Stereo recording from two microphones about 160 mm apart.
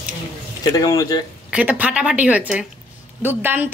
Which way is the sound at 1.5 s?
10° right (ahead or behind).